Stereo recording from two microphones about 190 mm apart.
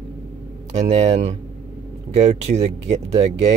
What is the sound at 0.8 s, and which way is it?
Speech, 30° right (ahead or behind).